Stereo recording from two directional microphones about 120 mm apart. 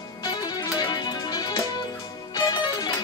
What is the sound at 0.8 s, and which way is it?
Music, 35° left (ahead or behind).